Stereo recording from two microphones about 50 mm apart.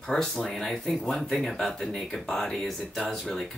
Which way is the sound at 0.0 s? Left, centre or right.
Centre.